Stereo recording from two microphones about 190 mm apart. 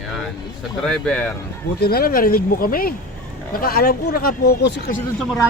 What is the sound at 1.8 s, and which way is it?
Speech, 50° left (ahead or behind).